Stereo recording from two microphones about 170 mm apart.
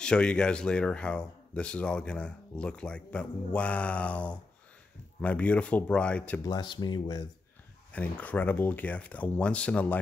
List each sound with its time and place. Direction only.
0.0 s speech: 5° left (ahead or behind)
6.4 s speech: 25° left (ahead or behind)
7.9 s speech: 10° left (ahead or behind)